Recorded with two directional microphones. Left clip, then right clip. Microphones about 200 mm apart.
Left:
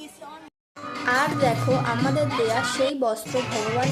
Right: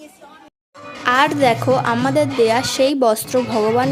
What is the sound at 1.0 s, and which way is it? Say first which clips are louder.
A woman's voice: right 7 dB; 45° right (ahead or behind).